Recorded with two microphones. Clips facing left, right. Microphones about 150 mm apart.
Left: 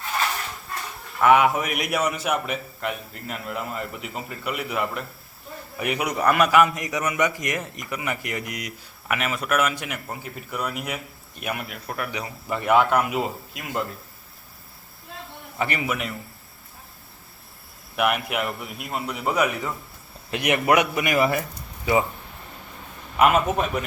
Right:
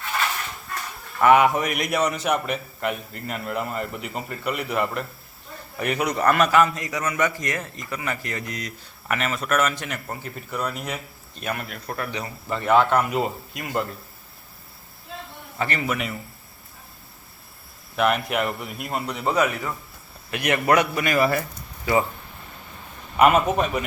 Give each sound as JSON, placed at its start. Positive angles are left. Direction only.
{"t": 1.2, "sound": "a man's voice", "side_deg": 0}
{"t": 15.5, "sound": "a man's voice", "side_deg": 15}
{"t": 17.9, "sound": "a man's voice", "side_deg": 10}
{"t": 23.1, "sound": "a man's voice", "side_deg": 0}